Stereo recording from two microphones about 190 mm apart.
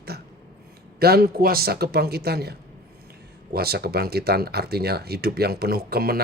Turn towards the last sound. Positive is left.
turn(degrees=-55)  # may be behind; listen again after turning